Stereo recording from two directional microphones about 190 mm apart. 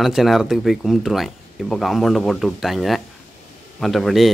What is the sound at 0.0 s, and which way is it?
Speech, centre (ahead or behind).